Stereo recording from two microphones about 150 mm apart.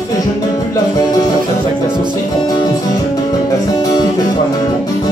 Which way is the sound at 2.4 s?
25° left (ahead or behind).